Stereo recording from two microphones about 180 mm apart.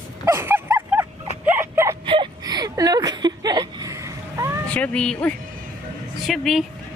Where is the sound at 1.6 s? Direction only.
15° right (ahead or behind).